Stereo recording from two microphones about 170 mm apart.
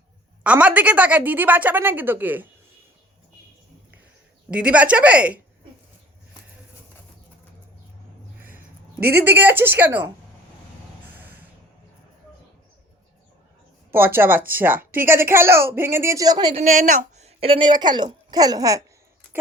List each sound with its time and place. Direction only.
0.4 s a woman's voice: 10° right (ahead or behind)
4.5 s a woman's voice: 5° right (ahead or behind)
8.4 s a sound: 10° right (ahead or behind)
9.0 s speech: 60° right (ahead or behind)
9.2 s a woman's voice: 15° right (ahead or behind)
13.9 s a woman's voice: 10° right (ahead or behind)
16.6 s a woman's voice: 45° right (ahead or behind); by 18.8 s 20° right (ahead or behind)